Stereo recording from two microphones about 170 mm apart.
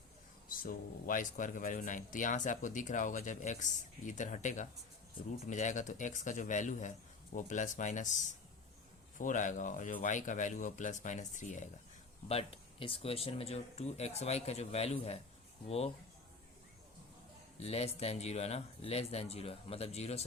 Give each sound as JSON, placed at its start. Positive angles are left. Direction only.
{"t": 0.5, "sound": "a man's voice", "side_deg": 55}
{"t": 12.3, "sound": "speech", "side_deg": 35}
{"t": 17.6, "sound": "speech", "side_deg": 35}